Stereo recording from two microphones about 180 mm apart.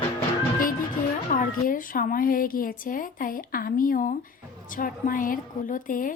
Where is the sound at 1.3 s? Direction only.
50° left (ahead or behind).